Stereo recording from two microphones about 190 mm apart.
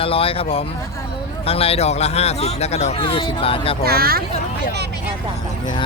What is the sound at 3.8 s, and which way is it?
Speech, 55° right (ahead or behind).